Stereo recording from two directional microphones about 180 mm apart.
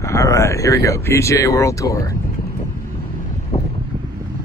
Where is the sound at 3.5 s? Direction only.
35° left (ahead or behind).